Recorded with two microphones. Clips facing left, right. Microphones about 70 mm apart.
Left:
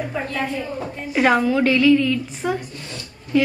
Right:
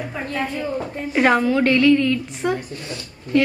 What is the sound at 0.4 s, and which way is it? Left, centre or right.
A woman's voice, centre.